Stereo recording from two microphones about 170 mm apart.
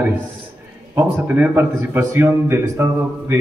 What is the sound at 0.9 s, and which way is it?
A man's voice, 10° right (ahead or behind).